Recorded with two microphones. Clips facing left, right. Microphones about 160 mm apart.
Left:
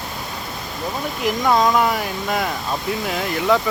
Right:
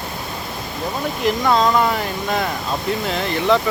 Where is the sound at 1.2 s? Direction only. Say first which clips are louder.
Even; 10° left (ahead or behind).